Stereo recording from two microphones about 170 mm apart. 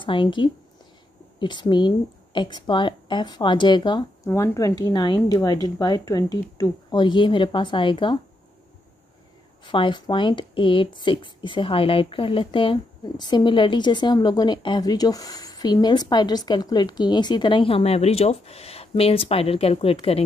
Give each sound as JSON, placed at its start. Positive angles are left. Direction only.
{"t": 0.0, "sound": "a woman's voice", "side_deg": 30}
{"t": 9.7, "sound": "a woman's voice", "side_deg": 30}